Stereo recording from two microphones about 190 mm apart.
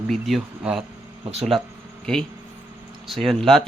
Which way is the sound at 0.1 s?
Centre (ahead or behind).